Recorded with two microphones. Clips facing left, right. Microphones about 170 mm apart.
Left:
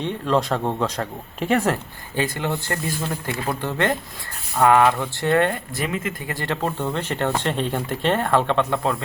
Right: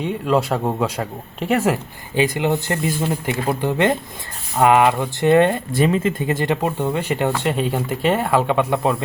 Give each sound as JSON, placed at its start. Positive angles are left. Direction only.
{"t": 0.0, "sound": "speech", "side_deg": -10}